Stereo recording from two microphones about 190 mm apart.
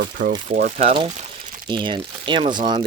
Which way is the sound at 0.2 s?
50° right (ahead or behind).